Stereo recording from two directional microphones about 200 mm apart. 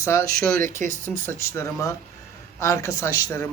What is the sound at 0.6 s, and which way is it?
Speech, 40° right (ahead or behind).